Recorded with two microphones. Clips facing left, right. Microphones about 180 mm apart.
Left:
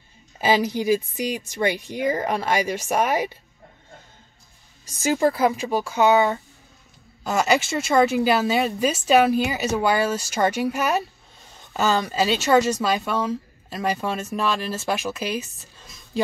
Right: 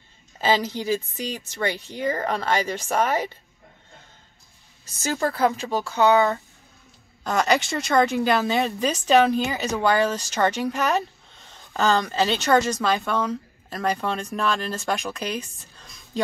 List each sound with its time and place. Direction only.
0.4 s a woman's voice: 10° left (ahead or behind)
5.0 s a woman's voice: 10° left (ahead or behind)